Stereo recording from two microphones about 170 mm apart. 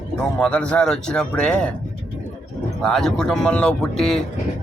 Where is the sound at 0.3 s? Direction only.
5° left (ahead or behind).